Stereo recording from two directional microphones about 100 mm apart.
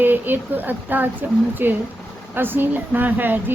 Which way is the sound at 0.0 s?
20° right (ahead or behind).